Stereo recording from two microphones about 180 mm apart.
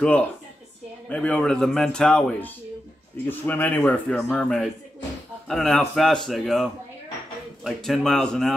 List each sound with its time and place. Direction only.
1.0 s a man's voice: 5° left (ahead or behind)